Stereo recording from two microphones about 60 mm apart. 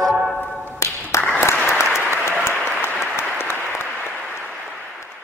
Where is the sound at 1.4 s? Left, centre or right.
Left.